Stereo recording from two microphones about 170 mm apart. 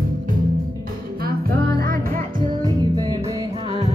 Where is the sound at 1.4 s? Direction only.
60° right (ahead or behind).